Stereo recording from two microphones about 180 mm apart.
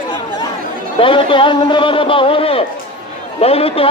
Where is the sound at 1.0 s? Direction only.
30° left (ahead or behind).